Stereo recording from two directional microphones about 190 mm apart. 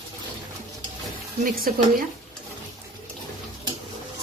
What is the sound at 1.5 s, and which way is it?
Speech, 50° right (ahead or behind).